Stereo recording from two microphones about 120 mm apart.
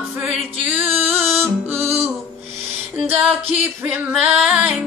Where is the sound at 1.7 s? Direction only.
60° right (ahead or behind).